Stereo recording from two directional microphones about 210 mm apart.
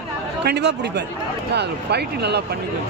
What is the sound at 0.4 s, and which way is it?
Speech, 55° right (ahead or behind).